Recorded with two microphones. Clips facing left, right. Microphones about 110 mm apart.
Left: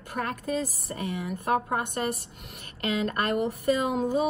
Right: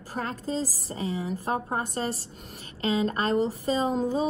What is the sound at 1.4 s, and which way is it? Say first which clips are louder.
A woman's voice: left 5 dB; 30° right (ahead or behind).